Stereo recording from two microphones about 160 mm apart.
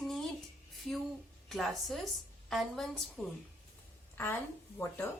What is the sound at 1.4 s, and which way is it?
Speech, centre (ahead or behind).